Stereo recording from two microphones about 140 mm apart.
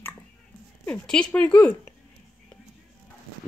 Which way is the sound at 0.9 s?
10° left (ahead or behind).